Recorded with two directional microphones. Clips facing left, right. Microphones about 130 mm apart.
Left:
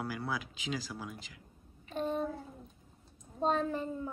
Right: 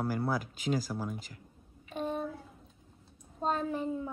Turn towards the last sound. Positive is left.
turn(degrees=-10)  # may be behind; listen again after turning